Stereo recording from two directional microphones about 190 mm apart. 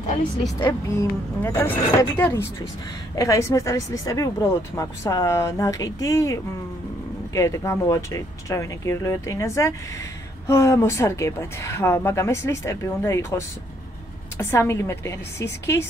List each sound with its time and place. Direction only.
0.6 s a woman's voice: 25° left (ahead or behind)
1.4 s a woman's voice: 10° left (ahead or behind)
14.4 s a woman's voice: 15° left (ahead or behind)